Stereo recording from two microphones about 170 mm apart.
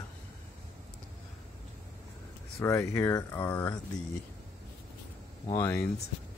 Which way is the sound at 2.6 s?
15° left (ahead or behind).